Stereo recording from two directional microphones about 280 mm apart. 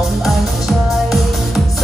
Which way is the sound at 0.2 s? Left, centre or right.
Centre.